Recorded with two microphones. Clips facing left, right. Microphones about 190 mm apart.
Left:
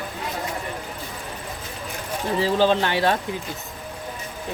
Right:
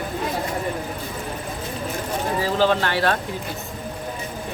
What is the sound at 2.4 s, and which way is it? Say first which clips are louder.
Speech: left 1 dB; 20° left (ahead or behind).